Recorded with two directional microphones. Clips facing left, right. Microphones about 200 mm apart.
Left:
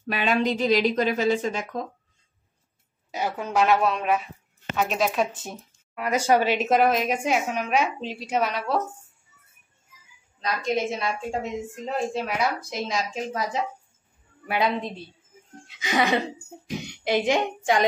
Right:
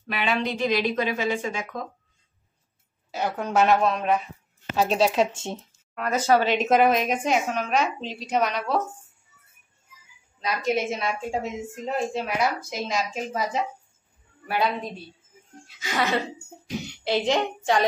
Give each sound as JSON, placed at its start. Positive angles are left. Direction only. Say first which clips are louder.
{"t": 0.0, "sound": "a woman's voice", "louder": "left 3 dB", "side_deg": 45}
{"t": 3.3, "sound": "a woman's voice", "louder": "right 1 dB", "side_deg": 5}
{"t": 4.7, "sound": "speech", "louder": "right 3 dB", "side_deg": -30}
{"t": 5.9, "sound": "a woman's voice", "louder": "even", "side_deg": 10}
{"t": 10.4, "sound": "a woman's voice", "louder": "right 1 dB", "side_deg": -5}
{"t": 15.6, "sound": "a woman's voice", "louder": "left 3 dB", "side_deg": 15}